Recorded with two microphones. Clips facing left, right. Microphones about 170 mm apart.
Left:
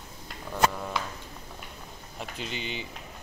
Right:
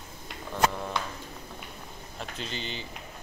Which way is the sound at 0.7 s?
5° left (ahead or behind).